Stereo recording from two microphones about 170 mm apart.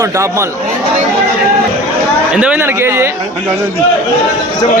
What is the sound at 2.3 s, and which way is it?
Speech, 5° right (ahead or behind).